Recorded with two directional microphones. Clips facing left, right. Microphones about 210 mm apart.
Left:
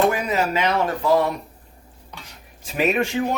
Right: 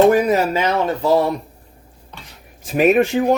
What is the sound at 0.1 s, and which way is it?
Speech, 45° right (ahead or behind).